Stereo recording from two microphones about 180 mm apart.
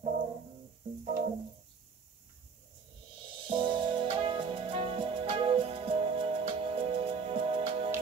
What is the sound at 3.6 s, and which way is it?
Music, 25° right (ahead or behind).